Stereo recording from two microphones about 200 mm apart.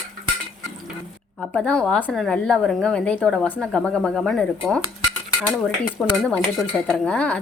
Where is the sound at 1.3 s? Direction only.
5° left (ahead or behind).